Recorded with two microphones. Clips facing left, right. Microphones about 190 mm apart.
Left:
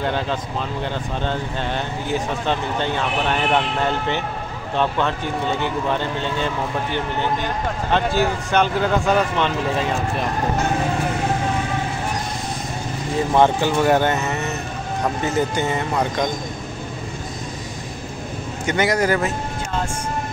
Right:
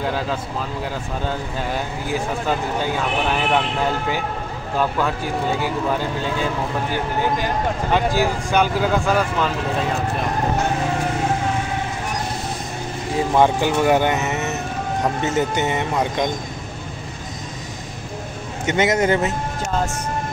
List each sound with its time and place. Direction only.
0.0 s speech: 5° right (ahead or behind)
13.4 s speech: 10° right (ahead or behind)
18.7 s speech: 25° right (ahead or behind)